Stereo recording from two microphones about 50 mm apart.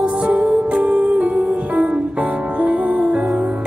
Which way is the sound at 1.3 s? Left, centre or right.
Centre.